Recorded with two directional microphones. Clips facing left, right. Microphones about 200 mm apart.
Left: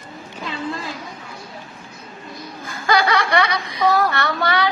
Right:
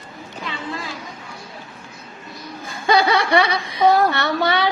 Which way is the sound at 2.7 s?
25° right (ahead or behind).